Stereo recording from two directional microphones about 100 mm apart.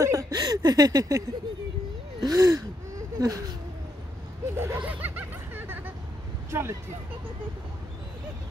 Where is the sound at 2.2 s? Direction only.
40° right (ahead or behind).